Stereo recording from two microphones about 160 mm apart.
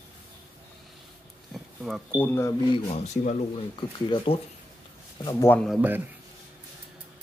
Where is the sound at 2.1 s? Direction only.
15° left (ahead or behind).